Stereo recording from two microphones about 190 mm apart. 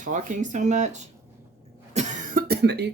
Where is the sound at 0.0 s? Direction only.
40° right (ahead or behind).